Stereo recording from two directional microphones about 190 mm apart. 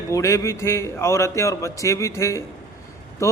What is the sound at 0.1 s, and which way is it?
A man's voice, 15° left (ahead or behind).